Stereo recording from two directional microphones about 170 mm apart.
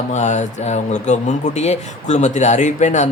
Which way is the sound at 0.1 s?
45° left (ahead or behind).